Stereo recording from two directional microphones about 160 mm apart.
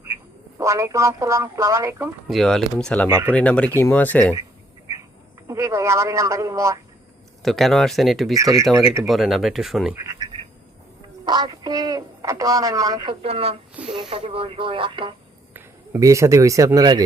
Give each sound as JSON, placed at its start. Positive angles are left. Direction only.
{"t": 0.6, "sound": "speech", "side_deg": -20}
{"t": 2.2, "sound": "speech", "side_deg": 0}
{"t": 3.1, "sound": "speech", "side_deg": -15}
{"t": 3.3, "sound": "speech", "side_deg": 10}
{"t": 5.5, "sound": "speech", "side_deg": -20}
{"t": 7.4, "sound": "speech", "side_deg": 0}
{"t": 8.4, "sound": "speech", "side_deg": -20}
{"t": 9.0, "sound": "speech", "side_deg": 0}
{"t": 9.9, "sound": "speech", "side_deg": -15}
{"t": 11.3, "sound": "speech", "side_deg": -25}
{"t": 15.5, "sound": "speech", "side_deg": -15}